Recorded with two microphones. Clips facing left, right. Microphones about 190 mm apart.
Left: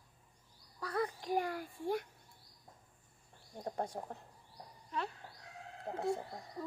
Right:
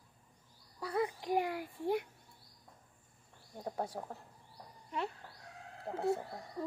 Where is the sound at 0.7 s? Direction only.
15° right (ahead or behind).